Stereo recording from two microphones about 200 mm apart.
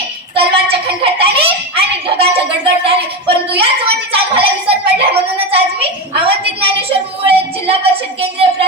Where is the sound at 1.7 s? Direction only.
25° right (ahead or behind).